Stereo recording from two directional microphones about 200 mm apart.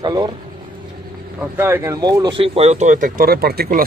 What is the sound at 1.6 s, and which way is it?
Speech, 10° right (ahead or behind).